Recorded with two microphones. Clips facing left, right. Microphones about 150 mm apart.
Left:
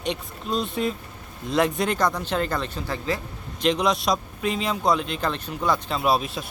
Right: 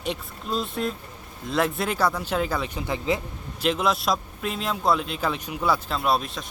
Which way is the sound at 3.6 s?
5° right (ahead or behind).